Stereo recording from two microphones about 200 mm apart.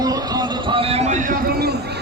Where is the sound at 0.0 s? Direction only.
20° right (ahead or behind).